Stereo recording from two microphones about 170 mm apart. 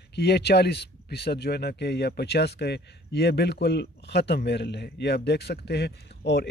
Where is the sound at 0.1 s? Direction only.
75° left (ahead or behind).